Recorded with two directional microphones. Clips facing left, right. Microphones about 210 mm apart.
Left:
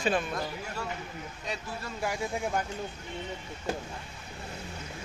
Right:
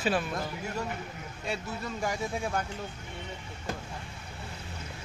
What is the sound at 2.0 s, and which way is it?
Speech, 10° left (ahead or behind).